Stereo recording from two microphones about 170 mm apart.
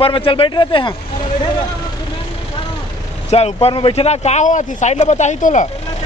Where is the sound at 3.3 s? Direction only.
40° left (ahead or behind).